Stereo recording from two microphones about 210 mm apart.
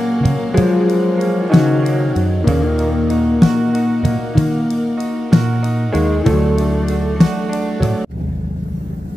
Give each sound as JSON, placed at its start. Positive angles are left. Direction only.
{"t": 0.0, "sound": "music", "side_deg": 0}